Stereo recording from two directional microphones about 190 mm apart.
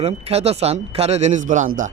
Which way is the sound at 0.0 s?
35° right (ahead or behind).